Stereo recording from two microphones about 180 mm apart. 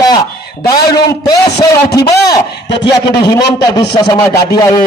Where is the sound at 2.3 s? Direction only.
75° left (ahead or behind).